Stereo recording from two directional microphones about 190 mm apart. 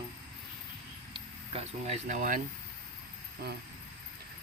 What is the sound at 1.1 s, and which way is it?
Speech, 30° right (ahead or behind).